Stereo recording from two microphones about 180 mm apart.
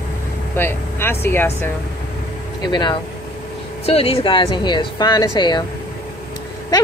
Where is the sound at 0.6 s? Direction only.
15° left (ahead or behind).